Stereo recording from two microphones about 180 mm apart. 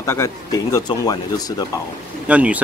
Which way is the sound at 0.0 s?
15° left (ahead or behind).